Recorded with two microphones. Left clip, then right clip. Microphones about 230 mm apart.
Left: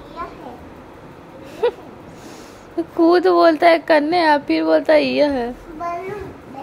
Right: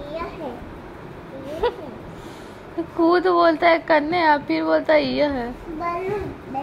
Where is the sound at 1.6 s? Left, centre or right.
Left.